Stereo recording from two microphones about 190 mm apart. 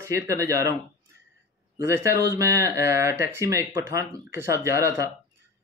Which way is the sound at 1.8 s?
15° right (ahead or behind).